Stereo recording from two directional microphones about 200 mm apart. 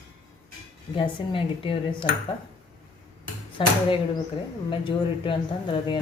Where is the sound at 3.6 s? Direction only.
25° left (ahead or behind).